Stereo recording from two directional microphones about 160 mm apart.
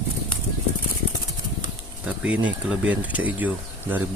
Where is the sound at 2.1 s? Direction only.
10° right (ahead or behind).